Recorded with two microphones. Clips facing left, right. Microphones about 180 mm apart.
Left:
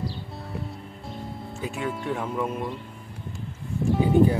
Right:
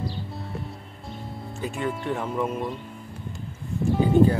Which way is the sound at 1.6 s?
5° left (ahead or behind).